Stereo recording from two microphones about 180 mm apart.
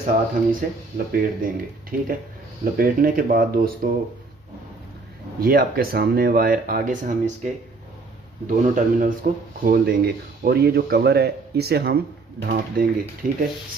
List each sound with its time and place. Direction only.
0.0 s speech: 50° right (ahead or behind)
5.4 s speech: 55° right (ahead or behind)
13.2 s speech: 50° right (ahead or behind)